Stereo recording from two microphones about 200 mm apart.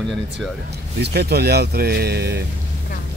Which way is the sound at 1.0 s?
55° right (ahead or behind).